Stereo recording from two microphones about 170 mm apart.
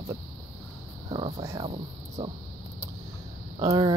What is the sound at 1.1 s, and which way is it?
Speech, 35° right (ahead or behind).